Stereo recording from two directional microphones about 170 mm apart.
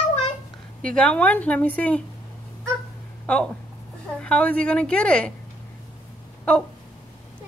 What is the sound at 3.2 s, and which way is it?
A woman's voice, 5° left (ahead or behind).